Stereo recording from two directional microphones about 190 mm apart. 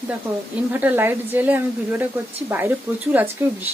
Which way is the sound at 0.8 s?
10° right (ahead or behind).